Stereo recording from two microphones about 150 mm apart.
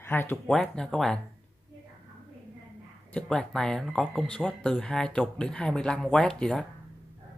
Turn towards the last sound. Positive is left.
turn(degrees=5)  # may be behind; listen again after turning